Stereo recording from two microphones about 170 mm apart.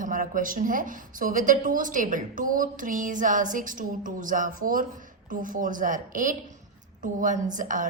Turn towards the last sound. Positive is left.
turn(degrees=-50)  # may be behind; listen again after turning